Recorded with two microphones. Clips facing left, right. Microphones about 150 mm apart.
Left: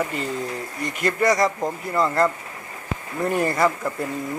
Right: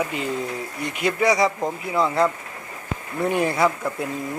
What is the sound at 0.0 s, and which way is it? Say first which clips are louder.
A man's voice: right 1 dB; centre (ahead or behind).